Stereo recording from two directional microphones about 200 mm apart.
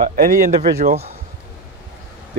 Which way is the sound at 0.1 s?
40° right (ahead or behind).